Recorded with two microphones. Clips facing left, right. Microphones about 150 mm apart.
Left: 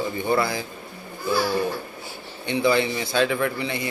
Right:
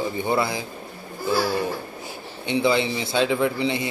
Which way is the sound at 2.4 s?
20° right (ahead or behind).